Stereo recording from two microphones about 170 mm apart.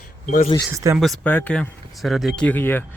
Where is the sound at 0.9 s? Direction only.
Centre (ahead or behind).